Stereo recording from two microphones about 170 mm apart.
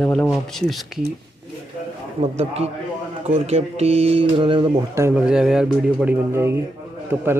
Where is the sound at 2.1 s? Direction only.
40° right (ahead or behind).